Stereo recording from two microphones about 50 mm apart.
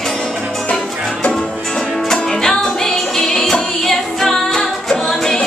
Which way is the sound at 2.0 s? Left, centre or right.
Centre.